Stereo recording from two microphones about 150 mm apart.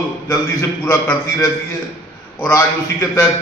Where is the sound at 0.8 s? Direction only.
15° left (ahead or behind).